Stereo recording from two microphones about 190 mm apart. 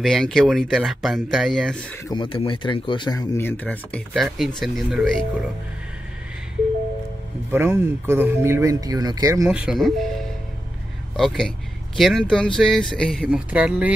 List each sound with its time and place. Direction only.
0.0 s speech: centre (ahead or behind)
2.0 s speech: 25° left (ahead or behind); by 5.2 s centre (ahead or behind)
7.5 s speech: 15° right (ahead or behind)
9.5 s speech: 5° right (ahead or behind)
11.1 s speech: 5° left (ahead or behind)
13.5 s speech: 5° right (ahead or behind)